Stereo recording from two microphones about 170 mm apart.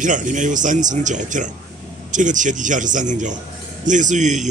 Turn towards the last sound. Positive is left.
turn(degrees=-45)  # may be behind; listen again after turning